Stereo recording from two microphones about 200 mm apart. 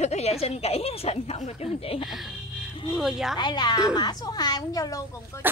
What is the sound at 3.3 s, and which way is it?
A woman's voice, 20° left (ahead or behind).